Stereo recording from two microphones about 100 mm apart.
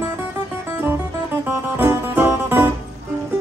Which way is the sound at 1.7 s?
20° right (ahead or behind).